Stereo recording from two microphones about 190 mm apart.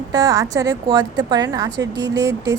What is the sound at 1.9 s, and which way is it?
Speech, 65° right (ahead or behind).